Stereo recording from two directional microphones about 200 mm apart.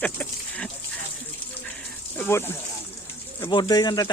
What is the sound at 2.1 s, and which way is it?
Speech, 10° left (ahead or behind).